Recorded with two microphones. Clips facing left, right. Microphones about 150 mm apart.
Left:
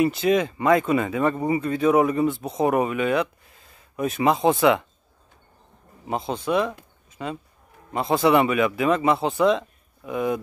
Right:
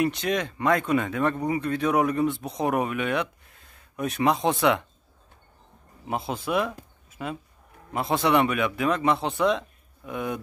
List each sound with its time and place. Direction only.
0.0 s speech: centre (ahead or behind)
6.0 s speech: 5° right (ahead or behind)